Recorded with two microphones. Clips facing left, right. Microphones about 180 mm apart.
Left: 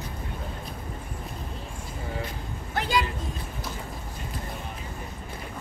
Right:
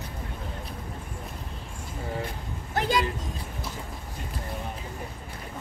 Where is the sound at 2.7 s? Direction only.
45° right (ahead or behind).